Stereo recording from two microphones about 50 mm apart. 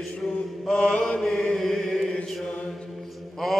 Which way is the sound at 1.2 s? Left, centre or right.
Centre.